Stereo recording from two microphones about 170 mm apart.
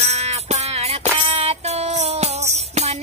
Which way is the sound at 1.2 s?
40° right (ahead or behind).